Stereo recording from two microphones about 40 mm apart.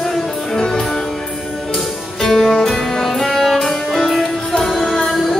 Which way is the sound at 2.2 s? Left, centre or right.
Centre.